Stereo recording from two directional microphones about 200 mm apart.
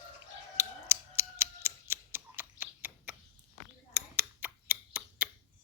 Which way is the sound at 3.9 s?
10° right (ahead or behind).